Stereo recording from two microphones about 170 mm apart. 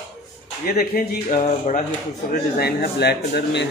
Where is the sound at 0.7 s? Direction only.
55° left (ahead or behind).